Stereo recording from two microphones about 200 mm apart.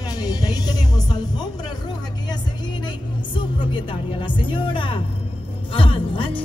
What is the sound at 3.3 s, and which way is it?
Speech, 25° left (ahead or behind).